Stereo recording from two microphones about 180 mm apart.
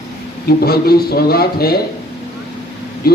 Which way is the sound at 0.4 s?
60° left (ahead or behind).